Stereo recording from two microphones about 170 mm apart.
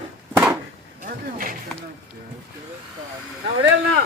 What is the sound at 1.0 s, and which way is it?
Speech, 55° right (ahead or behind).